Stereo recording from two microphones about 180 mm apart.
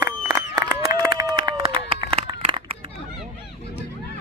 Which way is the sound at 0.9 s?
20° right (ahead or behind).